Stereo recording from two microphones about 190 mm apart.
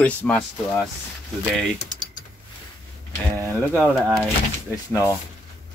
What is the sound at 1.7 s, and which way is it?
Typing, 40° left (ahead or behind).